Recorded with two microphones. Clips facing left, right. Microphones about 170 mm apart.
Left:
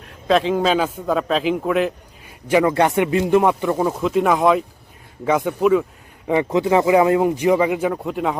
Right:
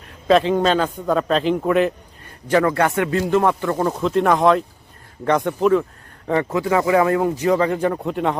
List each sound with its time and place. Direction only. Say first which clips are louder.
0.0 s a man's voice: right 2 dB; centre (ahead or behind)
2.5 s a man's voice: left 1 dB; 15° left (ahead or behind)